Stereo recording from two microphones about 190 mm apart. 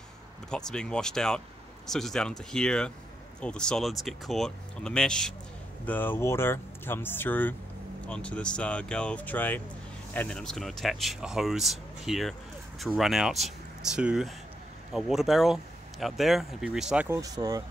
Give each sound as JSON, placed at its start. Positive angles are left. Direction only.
{"t": 0.5, "sound": "speech", "side_deg": 5}
{"t": 17.2, "sound": "speech", "side_deg": -20}